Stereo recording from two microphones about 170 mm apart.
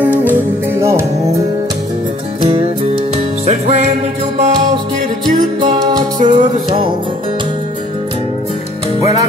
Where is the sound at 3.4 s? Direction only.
40° right (ahead or behind).